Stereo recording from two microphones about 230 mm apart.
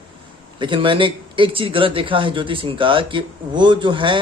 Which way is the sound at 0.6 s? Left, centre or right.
Right.